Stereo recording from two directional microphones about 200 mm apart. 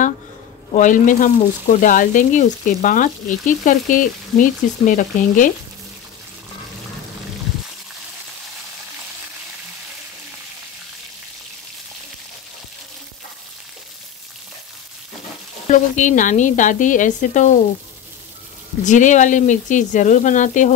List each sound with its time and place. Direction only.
0.7 s speech: 40° left (ahead or behind)
15.7 s speech: 40° left (ahead or behind)
18.9 s speech: 40° left (ahead or behind)